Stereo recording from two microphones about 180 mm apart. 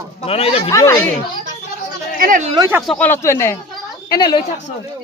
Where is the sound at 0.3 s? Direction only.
30° left (ahead or behind).